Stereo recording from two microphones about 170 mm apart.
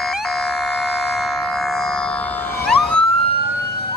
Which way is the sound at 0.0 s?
Centre (ahead or behind).